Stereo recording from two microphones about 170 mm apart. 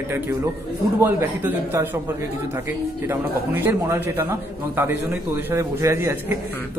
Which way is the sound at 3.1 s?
15° right (ahead or behind).